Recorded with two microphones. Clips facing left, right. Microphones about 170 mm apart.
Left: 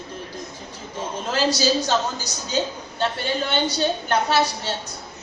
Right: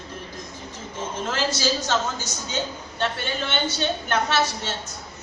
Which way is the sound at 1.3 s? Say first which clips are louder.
Left 6 dB; 35° left (ahead or behind).